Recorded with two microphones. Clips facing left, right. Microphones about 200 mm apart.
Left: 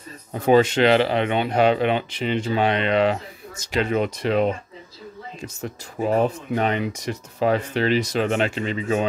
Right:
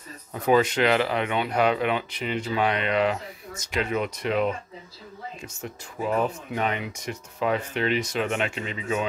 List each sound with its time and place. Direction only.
0.3 s speech: 25° left (ahead or behind)